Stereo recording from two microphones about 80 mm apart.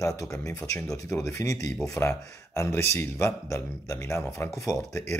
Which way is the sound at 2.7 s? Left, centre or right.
Left.